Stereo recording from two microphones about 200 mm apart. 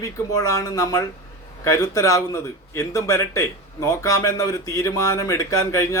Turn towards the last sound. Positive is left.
turn(degrees=15)  # may be behind; listen again after turning